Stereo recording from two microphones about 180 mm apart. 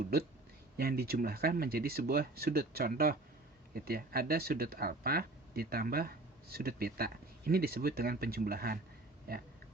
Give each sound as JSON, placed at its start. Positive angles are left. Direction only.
{"t": 0.8, "sound": "speech", "side_deg": -55}